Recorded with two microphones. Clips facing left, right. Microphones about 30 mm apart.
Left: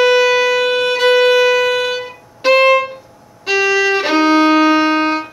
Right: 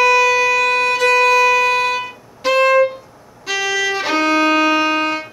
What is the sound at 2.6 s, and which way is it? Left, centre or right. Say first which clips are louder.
Music: right 1 dB; left.